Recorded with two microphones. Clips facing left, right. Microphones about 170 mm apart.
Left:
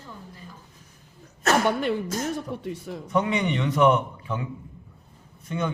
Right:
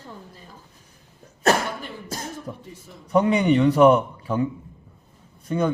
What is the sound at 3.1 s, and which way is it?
A man's voice, 35° right (ahead or behind).